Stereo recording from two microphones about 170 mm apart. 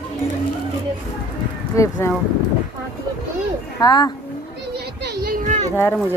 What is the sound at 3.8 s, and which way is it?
Speech, 25° left (ahead or behind).